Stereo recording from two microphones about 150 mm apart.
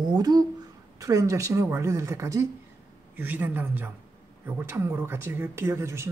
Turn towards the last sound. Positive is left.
turn(degrees=-15)  # may be behind; listen again after turning